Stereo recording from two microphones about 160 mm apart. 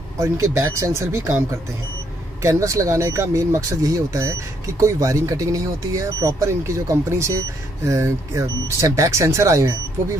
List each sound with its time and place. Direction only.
0.2 s speech: 20° right (ahead or behind)
2.4 s speech: 20° right (ahead or behind)